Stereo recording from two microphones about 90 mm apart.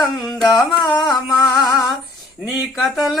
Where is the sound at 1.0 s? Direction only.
5° left (ahead or behind).